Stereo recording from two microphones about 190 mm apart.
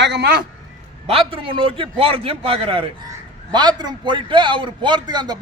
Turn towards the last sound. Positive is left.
turn(degrees=-20)  # may be behind; listen again after turning